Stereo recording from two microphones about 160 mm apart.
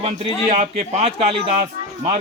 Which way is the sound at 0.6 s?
40° right (ahead or behind).